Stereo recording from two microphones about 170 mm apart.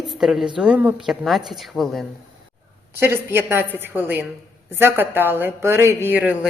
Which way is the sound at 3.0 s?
15° right (ahead or behind).